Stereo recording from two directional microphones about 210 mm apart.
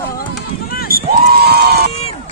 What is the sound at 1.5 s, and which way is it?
Run, 50° right (ahead or behind).